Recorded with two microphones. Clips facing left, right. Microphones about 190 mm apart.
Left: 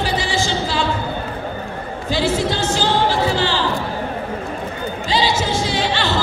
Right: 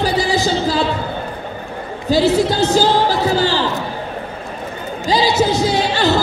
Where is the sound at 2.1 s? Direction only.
40° right (ahead or behind).